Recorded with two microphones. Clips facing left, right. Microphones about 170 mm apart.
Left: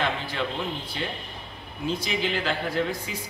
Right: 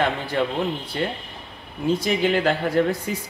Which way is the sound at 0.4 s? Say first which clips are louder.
Right 9 dB; 50° right (ahead or behind).